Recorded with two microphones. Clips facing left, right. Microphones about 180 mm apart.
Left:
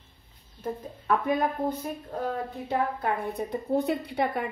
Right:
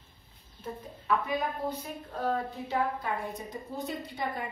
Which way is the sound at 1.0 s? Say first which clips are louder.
Left 5 dB; 50° left (ahead or behind).